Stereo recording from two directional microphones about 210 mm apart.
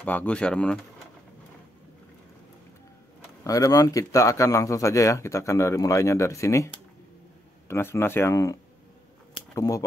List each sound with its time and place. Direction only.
0.0 s speech: 5° left (ahead or behind)
3.4 s speech: 15° left (ahead or behind)
9.6 s speech: 15° left (ahead or behind)